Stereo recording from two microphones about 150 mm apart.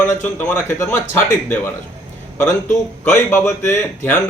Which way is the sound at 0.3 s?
15° left (ahead or behind).